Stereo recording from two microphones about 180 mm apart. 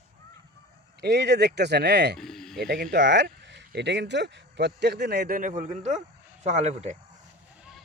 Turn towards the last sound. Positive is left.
turn(degrees=-40)  # may be behind; listen again after turning